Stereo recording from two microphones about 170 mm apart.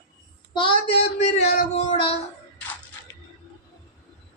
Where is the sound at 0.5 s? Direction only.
30° left (ahead or behind).